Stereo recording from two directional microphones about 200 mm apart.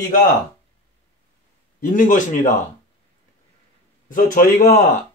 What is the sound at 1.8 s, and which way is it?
Speech, 40° left (ahead or behind).